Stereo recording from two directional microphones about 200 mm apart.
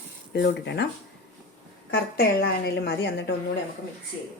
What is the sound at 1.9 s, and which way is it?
A woman's voice, 55° left (ahead or behind).